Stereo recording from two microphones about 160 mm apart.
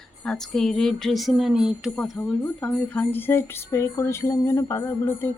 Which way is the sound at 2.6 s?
10° left (ahead or behind).